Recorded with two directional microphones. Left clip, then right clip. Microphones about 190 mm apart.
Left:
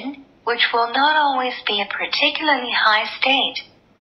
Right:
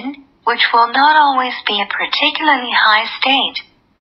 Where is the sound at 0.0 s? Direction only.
20° right (ahead or behind).